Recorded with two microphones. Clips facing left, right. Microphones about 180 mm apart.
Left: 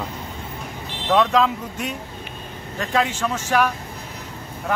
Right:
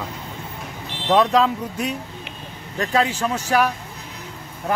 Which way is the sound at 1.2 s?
35° right (ahead or behind).